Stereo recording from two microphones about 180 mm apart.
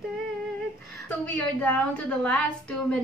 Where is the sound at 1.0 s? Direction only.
10° left (ahead or behind).